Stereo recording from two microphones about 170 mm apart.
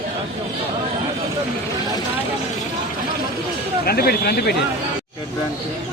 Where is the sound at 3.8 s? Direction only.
65° left (ahead or behind).